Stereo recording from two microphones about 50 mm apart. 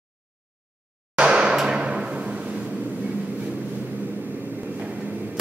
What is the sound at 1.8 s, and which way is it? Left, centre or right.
Timpani, centre.